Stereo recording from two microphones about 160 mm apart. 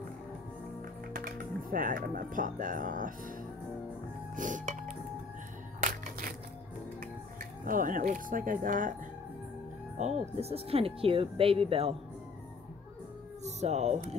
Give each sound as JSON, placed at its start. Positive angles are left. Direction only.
{"t": 1.1, "sound": "speech", "side_deg": -60}
{"t": 4.4, "sound": "music", "side_deg": -55}
{"t": 5.8, "sound": "a sound", "side_deg": -55}
{"t": 7.6, "sound": "speech", "side_deg": -60}
{"t": 9.9, "sound": "speech", "side_deg": -45}
{"t": 13.4, "sound": "music", "side_deg": -45}